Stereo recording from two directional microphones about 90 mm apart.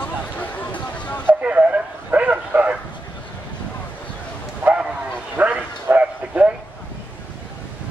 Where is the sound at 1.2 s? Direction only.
15° right (ahead or behind).